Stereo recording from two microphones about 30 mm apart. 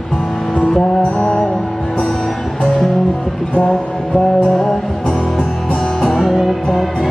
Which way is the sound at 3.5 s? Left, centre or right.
Left.